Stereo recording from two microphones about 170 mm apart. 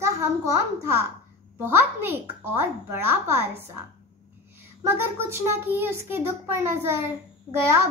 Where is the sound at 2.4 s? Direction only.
15° right (ahead or behind).